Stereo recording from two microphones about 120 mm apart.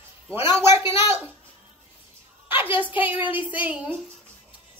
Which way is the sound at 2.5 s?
15° right (ahead or behind).